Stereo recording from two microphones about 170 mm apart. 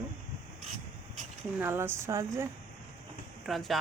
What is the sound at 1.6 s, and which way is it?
Speech, 15° right (ahead or behind).